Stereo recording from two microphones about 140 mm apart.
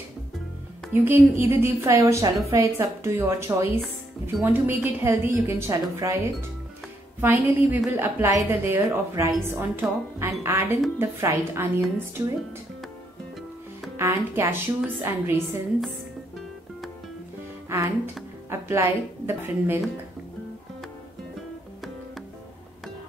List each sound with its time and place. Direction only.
0.9 s a woman's voice: 15° right (ahead or behind)
7.2 s a woman's voice: 15° right (ahead or behind)
13.9 s a woman's voice: 20° right (ahead or behind)
17.6 s a woman's voice: 20° right (ahead or behind)